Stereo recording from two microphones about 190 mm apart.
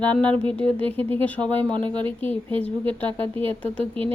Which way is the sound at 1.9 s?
25° right (ahead or behind).